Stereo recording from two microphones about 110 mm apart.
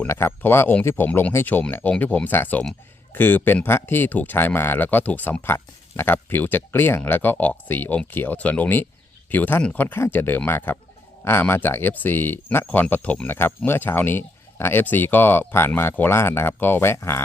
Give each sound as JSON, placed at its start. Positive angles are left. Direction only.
{"t": 0.1, "sound": "speech", "side_deg": 20}